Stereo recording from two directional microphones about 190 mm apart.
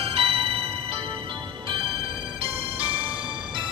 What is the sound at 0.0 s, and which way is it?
Music, 30° right (ahead or behind).